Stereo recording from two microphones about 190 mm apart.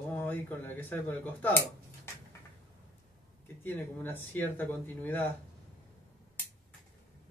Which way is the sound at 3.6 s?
10° left (ahead or behind).